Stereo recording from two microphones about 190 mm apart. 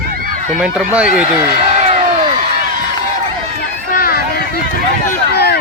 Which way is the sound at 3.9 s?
50° left (ahead or behind).